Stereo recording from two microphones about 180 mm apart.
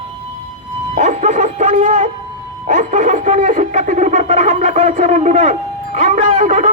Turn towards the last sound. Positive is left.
turn(degrees=-45)  # may be behind; listen again after turning